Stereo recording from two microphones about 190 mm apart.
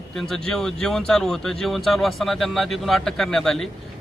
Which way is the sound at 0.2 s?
5° left (ahead or behind).